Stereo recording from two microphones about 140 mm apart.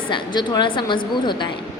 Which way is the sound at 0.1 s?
30° left (ahead or behind).